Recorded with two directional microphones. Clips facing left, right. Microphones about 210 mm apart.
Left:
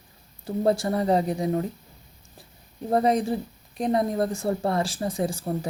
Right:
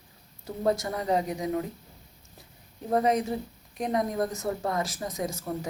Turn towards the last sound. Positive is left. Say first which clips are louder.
# left 5 dB
turn(degrees=30)  # may be behind; listen again after turning